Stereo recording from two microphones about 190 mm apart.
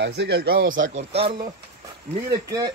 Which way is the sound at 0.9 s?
30° right (ahead or behind).